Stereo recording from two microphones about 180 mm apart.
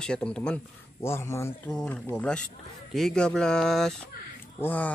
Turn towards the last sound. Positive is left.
turn(degrees=10)  # may be behind; listen again after turning